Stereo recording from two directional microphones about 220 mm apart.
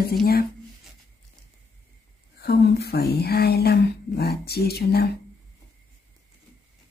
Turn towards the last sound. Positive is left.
turn(degrees=45)  # may be behind; listen again after turning